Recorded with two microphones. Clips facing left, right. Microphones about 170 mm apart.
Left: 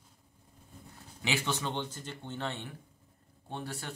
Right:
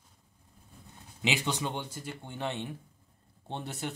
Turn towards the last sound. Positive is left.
turn(degrees=-20)  # may be behind; listen again after turning